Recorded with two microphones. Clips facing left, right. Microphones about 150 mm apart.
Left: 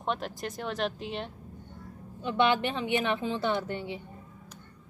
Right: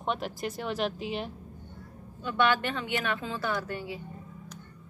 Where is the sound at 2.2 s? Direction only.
20° left (ahead or behind).